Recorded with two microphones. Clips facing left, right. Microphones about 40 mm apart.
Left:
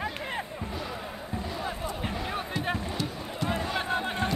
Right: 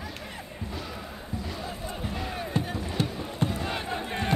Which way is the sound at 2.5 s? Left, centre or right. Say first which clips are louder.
Right 3 dB; right.